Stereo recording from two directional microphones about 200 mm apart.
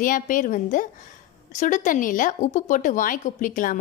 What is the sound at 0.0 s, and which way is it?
A woman's voice, 40° left (ahead or behind).